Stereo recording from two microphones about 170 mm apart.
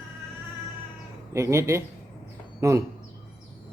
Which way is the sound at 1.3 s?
15° right (ahead or behind).